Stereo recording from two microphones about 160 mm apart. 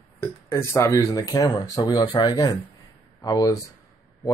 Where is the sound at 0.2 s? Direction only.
15° left (ahead or behind).